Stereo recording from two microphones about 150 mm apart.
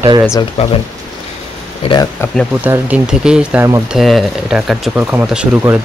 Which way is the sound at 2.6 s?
5° right (ahead or behind).